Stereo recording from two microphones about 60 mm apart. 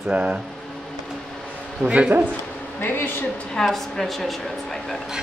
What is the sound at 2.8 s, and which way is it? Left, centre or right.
Speech, left.